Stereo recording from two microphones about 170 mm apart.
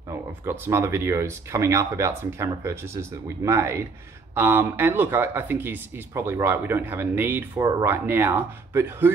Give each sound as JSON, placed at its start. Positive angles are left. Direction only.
{"t": 0.5, "sound": "speech", "side_deg": -15}